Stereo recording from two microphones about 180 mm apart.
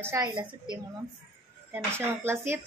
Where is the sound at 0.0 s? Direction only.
15° right (ahead or behind).